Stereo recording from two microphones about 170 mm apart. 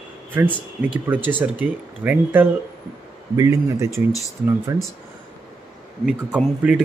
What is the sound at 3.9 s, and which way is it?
Speech, 20° left (ahead or behind).